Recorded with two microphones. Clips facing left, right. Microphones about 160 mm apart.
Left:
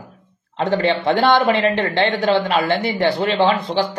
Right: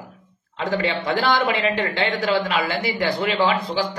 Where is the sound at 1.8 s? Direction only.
30° left (ahead or behind).